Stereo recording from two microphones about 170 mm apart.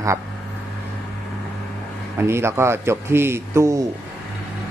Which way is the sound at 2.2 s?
15° right (ahead or behind).